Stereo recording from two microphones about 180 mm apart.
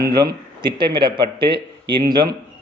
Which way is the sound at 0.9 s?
25° right (ahead or behind).